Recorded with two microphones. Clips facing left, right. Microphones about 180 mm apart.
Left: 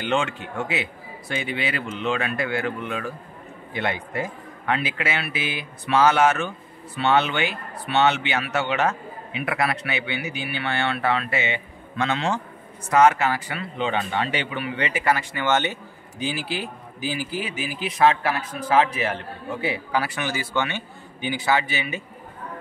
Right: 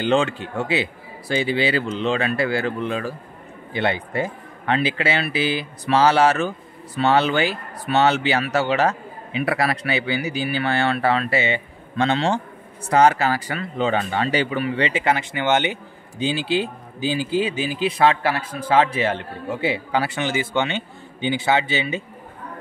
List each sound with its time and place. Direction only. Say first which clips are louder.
0.0 s speech: right 5 dB; 35° right (ahead or behind)